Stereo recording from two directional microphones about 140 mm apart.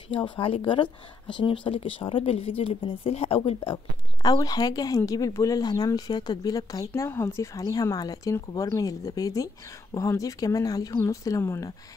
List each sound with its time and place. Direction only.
0.1 s speech: 40° left (ahead or behind); by 11.7 s 20° left (ahead or behind)